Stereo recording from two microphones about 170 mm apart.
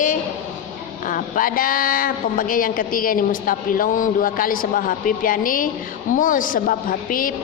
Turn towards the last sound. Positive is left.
turn(degrees=55)  # may be behind; listen again after turning